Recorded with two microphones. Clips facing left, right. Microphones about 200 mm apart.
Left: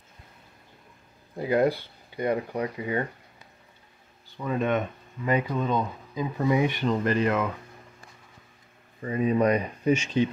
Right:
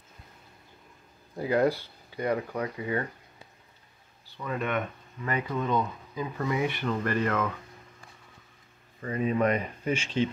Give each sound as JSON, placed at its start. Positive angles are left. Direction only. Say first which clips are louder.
{"t": 1.4, "sound": "speech", "louder": "left 2 dB", "side_deg": 25}
{"t": 4.4, "sound": "speech", "louder": "left 4 dB", "side_deg": 25}
{"t": 9.0, "sound": "speech", "louder": "left 3 dB", "side_deg": 20}